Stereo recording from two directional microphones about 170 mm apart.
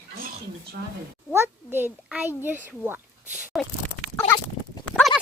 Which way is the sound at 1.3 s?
15° right (ahead or behind).